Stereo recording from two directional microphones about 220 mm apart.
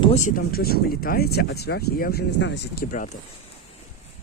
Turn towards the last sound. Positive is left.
turn(degrees=35)  # may be behind; listen again after turning